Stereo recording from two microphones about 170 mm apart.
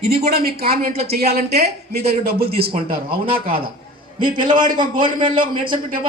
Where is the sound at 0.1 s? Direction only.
65° right (ahead or behind).